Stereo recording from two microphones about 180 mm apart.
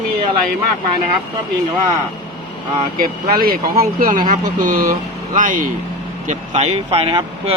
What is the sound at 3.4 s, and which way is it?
Speech, 55° right (ahead or behind).